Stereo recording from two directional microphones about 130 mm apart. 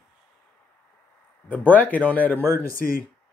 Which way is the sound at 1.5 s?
10° left (ahead or behind).